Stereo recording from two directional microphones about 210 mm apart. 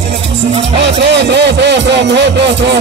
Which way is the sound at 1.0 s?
55° right (ahead or behind).